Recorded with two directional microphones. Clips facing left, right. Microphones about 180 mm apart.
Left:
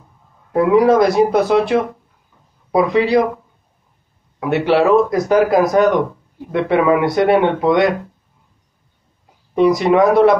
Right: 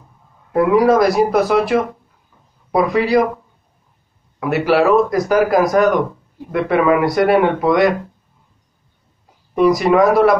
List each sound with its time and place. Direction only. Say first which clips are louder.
0.5 s speech: left 1 dB; 25° left (ahead or behind)
4.4 s speech: even; 25° left (ahead or behind)
9.6 s speech: even; 25° left (ahead or behind)